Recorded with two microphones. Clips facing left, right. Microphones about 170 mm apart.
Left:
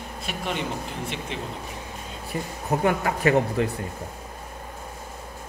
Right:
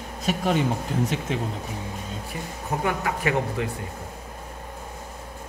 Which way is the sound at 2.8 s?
40° left (ahead or behind).